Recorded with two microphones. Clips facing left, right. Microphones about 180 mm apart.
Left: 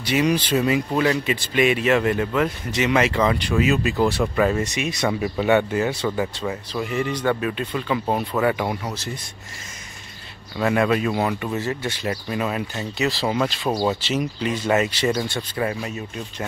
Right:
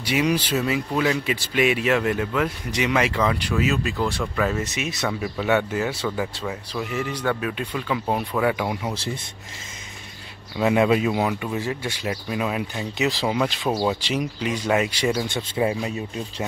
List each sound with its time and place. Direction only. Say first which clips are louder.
0.0 s speech: left 2 dB; 5° right (ahead or behind)
4.2 s speech: left 5 dB; 25° left (ahead or behind)
4.6 s speech: left 3 dB; 5° right (ahead or behind)
5.7 s speech: left 3 dB; 5° right (ahead or behind)
6.0 s speech: left 3 dB; 5° left (ahead or behind)
6.9 s speech: left 3 dB; 5° right (ahead or behind)
8.9 s speech: right 2 dB; 30° right (ahead or behind)
10.6 s speech: right 1 dB; 15° right (ahead or behind)
12.9 s speech: even; 15° right (ahead or behind)
13.7 s speech: left 1 dB; 5° right (ahead or behind)